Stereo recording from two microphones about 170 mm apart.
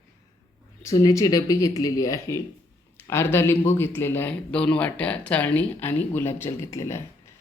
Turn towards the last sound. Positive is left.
turn(degrees=15)  # may be behind; listen again after turning